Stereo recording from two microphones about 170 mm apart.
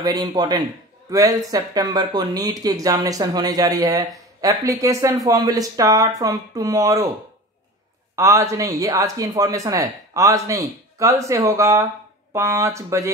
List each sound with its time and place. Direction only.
0.0 s speech: 20° right (ahead or behind)
8.2 s speech: 20° right (ahead or behind)